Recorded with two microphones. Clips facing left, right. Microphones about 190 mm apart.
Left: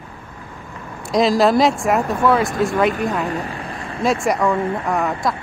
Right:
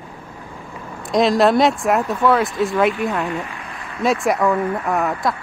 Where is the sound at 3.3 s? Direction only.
35° left (ahead or behind).